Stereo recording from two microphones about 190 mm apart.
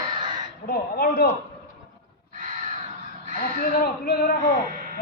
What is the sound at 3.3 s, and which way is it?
Speech, 50° left (ahead or behind).